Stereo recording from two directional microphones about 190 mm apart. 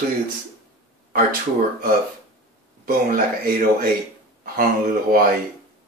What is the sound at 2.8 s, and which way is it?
Speech, 50° right (ahead or behind).